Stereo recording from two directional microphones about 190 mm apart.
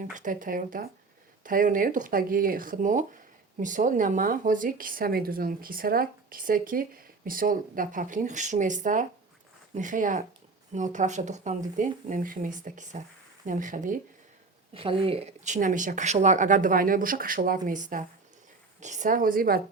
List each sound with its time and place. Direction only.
0.0 s speech: 45° right (ahead or behind)
14.7 s speech: 30° right (ahead or behind); by 19.6 s 50° right (ahead or behind)